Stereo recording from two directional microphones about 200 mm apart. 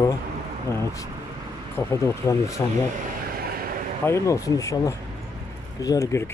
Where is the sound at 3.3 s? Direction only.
50° right (ahead or behind).